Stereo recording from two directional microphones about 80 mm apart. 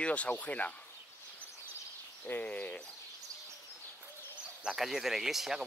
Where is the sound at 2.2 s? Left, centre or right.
Left.